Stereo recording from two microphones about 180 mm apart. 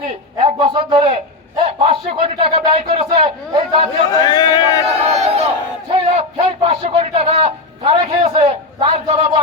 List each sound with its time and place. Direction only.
0.4 s a man's voice: 30° right (ahead or behind)
4.1 s speech: 25° left (ahead or behind)
4.9 s a sound: 35° right (ahead or behind)
5.9 s a man's voice: 30° right (ahead or behind)